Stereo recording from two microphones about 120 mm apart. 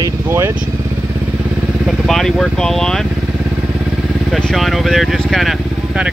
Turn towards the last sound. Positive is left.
turn(degrees=0)  # may be behind; listen again after turning